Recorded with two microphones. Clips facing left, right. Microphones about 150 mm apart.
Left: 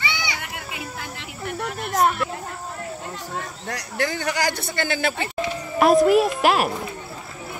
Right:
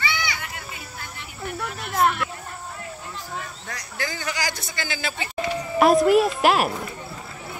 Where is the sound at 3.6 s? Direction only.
65° left (ahead or behind).